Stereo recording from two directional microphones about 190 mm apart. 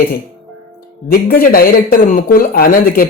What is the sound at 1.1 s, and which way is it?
Speech, 50° left (ahead or behind).